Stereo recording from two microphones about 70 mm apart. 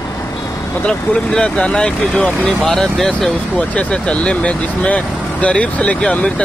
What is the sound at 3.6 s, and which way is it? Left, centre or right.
Speech, centre.